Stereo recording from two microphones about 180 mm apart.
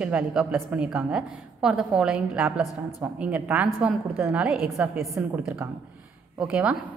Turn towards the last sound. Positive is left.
turn(degrees=-5)  # may be behind; listen again after turning